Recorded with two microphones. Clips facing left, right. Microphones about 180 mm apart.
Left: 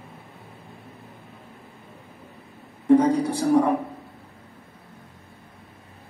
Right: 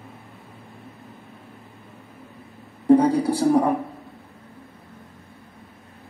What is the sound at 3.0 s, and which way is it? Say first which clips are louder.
Speech: right 2 dB; 35° right (ahead or behind).